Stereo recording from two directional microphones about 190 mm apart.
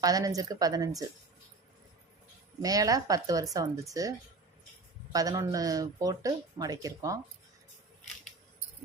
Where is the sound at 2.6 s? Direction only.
20° right (ahead or behind).